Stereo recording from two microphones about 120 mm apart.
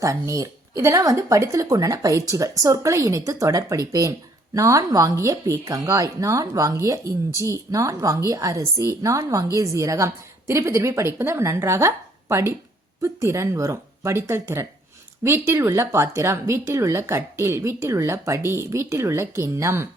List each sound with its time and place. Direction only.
0.0 s speech: 25° right (ahead or behind)